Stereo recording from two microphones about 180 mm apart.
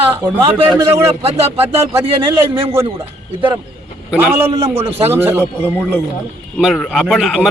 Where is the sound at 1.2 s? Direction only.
35° right (ahead or behind).